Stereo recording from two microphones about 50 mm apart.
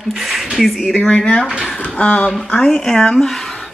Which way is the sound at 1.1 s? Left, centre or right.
Centre.